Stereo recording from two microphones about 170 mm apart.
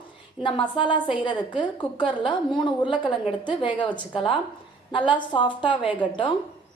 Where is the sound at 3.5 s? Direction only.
30° left (ahead or behind).